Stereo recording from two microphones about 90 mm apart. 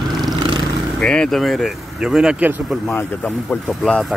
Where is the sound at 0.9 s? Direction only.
10° left (ahead or behind); by 2.4 s 5° right (ahead or behind).